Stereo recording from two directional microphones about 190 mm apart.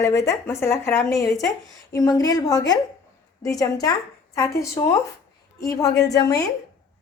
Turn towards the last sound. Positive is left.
turn(degrees=20)  # may be behind; listen again after turning